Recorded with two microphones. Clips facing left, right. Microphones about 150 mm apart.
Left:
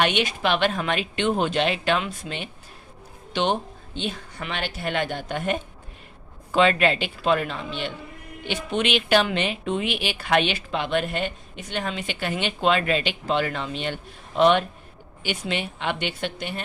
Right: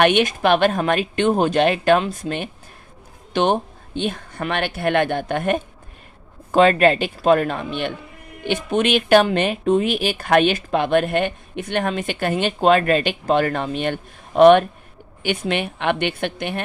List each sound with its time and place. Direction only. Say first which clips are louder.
0.0 s speech: right 7 dB; 50° right (ahead or behind)
6.5 s speech: right 5 dB; 45° right (ahead or behind)